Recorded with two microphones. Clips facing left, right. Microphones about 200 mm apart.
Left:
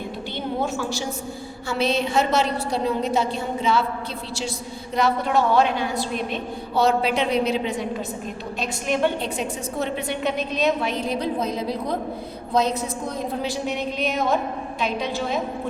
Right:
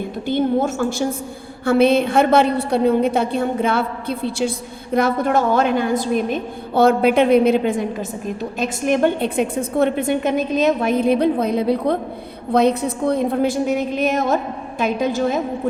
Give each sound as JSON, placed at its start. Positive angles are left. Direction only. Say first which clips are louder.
{"t": 0.3, "sound": "a woman's voice", "louder": "right 9 dB", "side_deg": -50}